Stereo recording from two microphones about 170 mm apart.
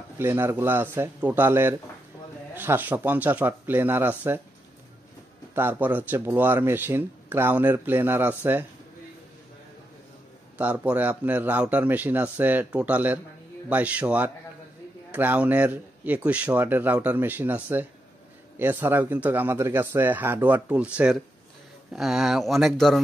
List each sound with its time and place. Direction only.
0.2 s speech: 15° right (ahead or behind)
5.5 s speech: 10° right (ahead or behind)
10.6 s speech: 10° right (ahead or behind)